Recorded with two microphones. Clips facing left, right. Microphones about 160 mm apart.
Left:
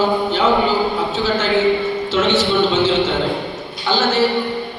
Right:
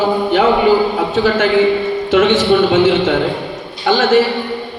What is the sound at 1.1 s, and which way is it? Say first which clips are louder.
A man's voice: right 7 dB; 55° right (ahead or behind).